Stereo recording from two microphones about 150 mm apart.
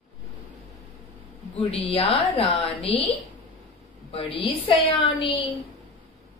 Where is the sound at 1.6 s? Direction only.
40° left (ahead or behind).